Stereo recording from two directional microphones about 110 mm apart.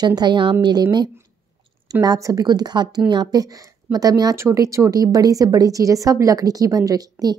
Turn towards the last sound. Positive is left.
turn(degrees=-35)  # may be behind; listen again after turning